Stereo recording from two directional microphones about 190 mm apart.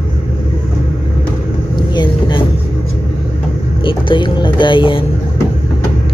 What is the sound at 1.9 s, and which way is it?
Vehicle, 25° left (ahead or behind).